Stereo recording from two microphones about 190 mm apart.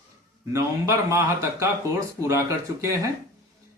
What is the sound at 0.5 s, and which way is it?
Speech, 15° right (ahead or behind).